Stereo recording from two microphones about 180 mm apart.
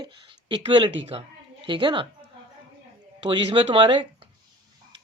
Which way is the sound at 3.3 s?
30° right (ahead or behind).